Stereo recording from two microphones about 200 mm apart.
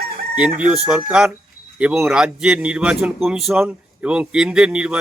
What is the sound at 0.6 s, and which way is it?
A man's voice, 5° right (ahead or behind).